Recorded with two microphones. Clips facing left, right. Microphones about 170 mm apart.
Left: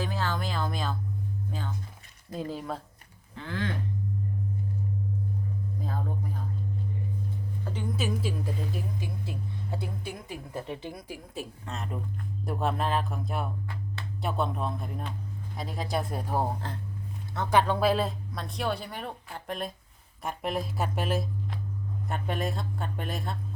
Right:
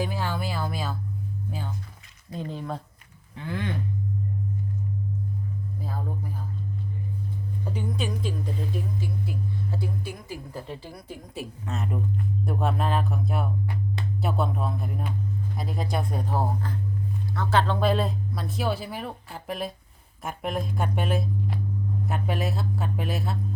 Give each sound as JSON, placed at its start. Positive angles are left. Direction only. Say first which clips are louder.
{"t": 0.0, "sound": "music", "louder": "right 2 dB", "side_deg": -10}
{"t": 1.5, "sound": "chirp tone", "louder": "right 2 dB", "side_deg": -10}
{"t": 2.3, "sound": "speech", "louder": "right 1 dB", "side_deg": 5}
{"t": 3.3, "sound": "speech", "louder": "right 2 dB", "side_deg": -15}
{"t": 7.6, "sound": "a sound", "louder": "right 5 dB", "side_deg": -10}
{"t": 7.9, "sound": "speech", "louder": "left 2 dB", "side_deg": 5}
{"t": 9.7, "sound": "speech", "louder": "right 4 dB", "side_deg": 20}
{"t": 11.3, "sound": "speech", "louder": "right 5 dB", "side_deg": 0}